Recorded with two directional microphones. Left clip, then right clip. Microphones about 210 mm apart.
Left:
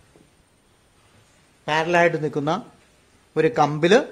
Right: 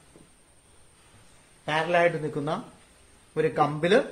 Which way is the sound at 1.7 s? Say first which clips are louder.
Left 4 dB; 55° left (ahead or behind).